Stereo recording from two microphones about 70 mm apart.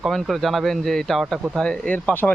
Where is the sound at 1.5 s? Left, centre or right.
Centre.